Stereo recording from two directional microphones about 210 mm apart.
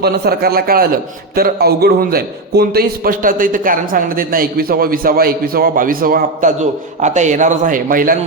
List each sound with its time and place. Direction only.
0.0 s a man's voice: 45° right (ahead or behind)